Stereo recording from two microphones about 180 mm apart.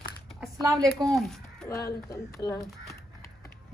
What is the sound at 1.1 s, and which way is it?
Speech, centre (ahead or behind).